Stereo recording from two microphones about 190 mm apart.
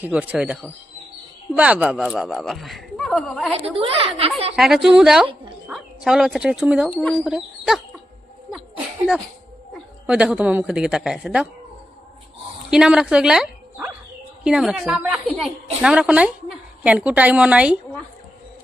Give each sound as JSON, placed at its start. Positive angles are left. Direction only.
{"t": 0.0, "sound": "a woman's voice", "side_deg": -10}
{"t": 3.8, "sound": "a woman's voice", "side_deg": -30}
{"t": 4.5, "sound": "speech", "side_deg": 0}
{"t": 9.7, "sound": "a woman's voice", "side_deg": -5}
{"t": 12.7, "sound": "a woman's voice", "side_deg": -5}